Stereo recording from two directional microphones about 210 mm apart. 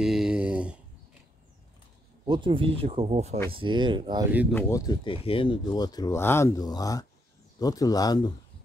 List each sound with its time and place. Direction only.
0.0 s a sound: 5° right (ahead or behind)
2.2 s speech: 20° right (ahead or behind)
4.3 s speech: 5° right (ahead or behind)
4.6 s speech: 15° left (ahead or behind)